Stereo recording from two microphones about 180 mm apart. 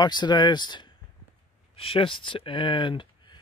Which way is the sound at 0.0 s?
25° left (ahead or behind).